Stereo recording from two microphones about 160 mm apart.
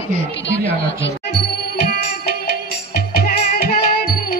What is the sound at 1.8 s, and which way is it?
Music, 75° left (ahead or behind).